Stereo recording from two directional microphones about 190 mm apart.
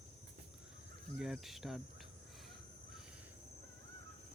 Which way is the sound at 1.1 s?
5° right (ahead or behind).